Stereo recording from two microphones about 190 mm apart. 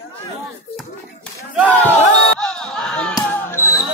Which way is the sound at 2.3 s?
Centre (ahead or behind).